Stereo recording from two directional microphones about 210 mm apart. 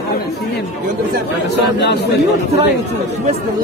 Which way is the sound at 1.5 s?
55° left (ahead or behind).